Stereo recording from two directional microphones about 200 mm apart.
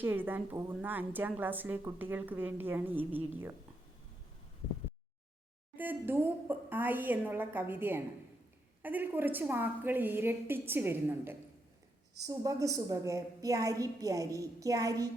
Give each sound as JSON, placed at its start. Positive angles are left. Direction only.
{"t": 0.0, "sound": "a woman's voice", "side_deg": -10}
{"t": 5.7, "sound": "a woman's voice", "side_deg": -10}